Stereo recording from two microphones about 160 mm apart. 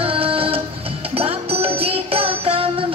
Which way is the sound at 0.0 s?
35° right (ahead or behind).